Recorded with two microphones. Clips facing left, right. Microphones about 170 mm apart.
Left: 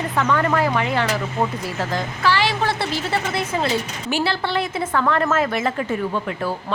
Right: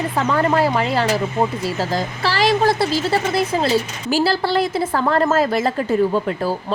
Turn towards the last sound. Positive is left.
turn(degrees=-35)  # may be behind; listen again after turning